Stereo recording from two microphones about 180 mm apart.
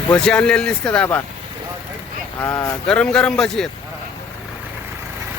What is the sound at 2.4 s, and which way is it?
Speech, 15° left (ahead or behind).